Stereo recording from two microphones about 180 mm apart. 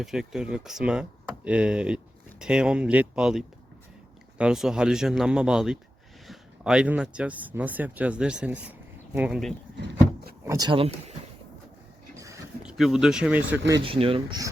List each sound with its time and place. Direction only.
0.0 s speech: 5° right (ahead or behind)
9.7 s vehicle: 65° right (ahead or behind)
10.4 s speech: 15° right (ahead or behind)
10.7 s speech: 30° right (ahead or behind)
12.1 s a sound: 15° right (ahead or behind)
12.6 s speech: centre (ahead or behind)
13.8 s speech: 30° right (ahead or behind)